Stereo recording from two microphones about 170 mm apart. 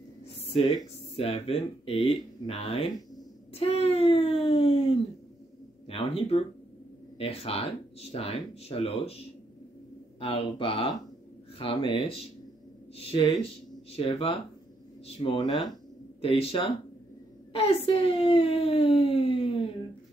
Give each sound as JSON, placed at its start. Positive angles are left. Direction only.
{"t": 0.5, "sound": "speech", "side_deg": 30}
{"t": 10.2, "sound": "speech", "side_deg": 35}